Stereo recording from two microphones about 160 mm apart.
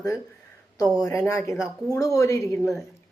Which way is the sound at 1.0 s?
20° left (ahead or behind).